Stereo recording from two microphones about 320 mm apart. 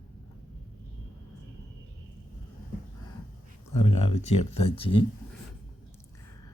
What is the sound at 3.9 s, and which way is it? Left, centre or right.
Speech, centre.